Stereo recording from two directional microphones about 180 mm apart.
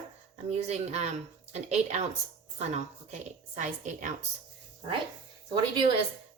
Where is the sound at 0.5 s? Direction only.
35° right (ahead or behind).